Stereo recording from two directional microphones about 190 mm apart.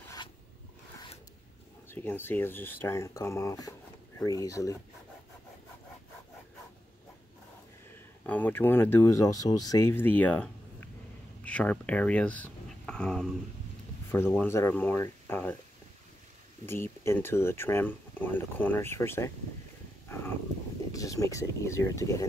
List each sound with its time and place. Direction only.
1.9 s speech: 10° left (ahead or behind)
8.3 s speech: 10° left (ahead or behind)
16.6 s speech: 10° left (ahead or behind)
20.9 s speech: 15° left (ahead or behind)